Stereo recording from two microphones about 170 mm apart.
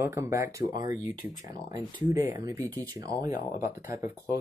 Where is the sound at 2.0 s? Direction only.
10° right (ahead or behind).